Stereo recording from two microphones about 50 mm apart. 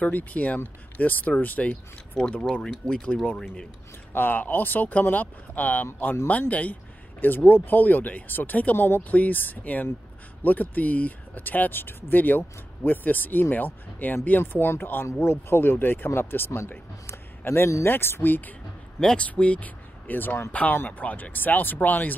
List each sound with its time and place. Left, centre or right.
0.0 s speech: left
1.7 s speech: centre
4.1 s speech: left
8.7 s speech: left
9.1 s speech: left
14.4 s speech: left
17.5 s speech: left
17.8 s speech: left
18.9 s speech: centre; by 22.1 s left